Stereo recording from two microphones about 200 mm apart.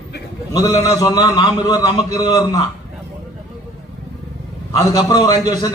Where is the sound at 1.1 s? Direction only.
20° left (ahead or behind).